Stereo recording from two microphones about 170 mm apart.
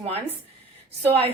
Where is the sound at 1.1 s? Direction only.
35° right (ahead or behind).